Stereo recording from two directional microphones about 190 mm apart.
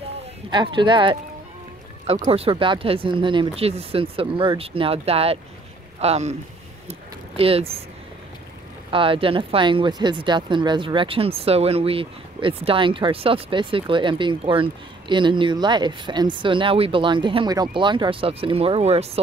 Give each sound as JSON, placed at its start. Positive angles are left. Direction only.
{"t": 0.5, "sound": "speech", "side_deg": -25}
{"t": 6.9, "sound": "a sound", "side_deg": -30}
{"t": 8.9, "sound": "speech", "side_deg": -30}